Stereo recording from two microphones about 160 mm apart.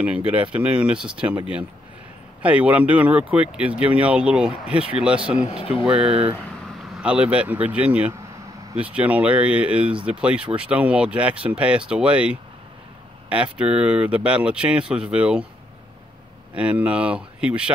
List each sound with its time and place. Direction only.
0.3 s speech: 10° right (ahead or behind)
2.4 s speech: 10° right (ahead or behind)
6.0 s speech: 35° right (ahead or behind)
6.9 s speech: 5° right (ahead or behind)
16.5 s speech: 10° right (ahead or behind)